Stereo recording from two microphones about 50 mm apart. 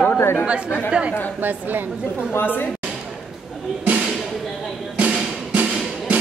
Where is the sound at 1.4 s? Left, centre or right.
Right.